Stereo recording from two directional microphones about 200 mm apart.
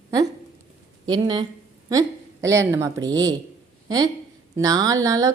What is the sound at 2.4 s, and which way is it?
Speech, 15° right (ahead or behind).